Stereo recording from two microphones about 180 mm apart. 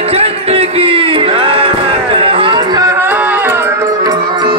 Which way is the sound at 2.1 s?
30° right (ahead or behind).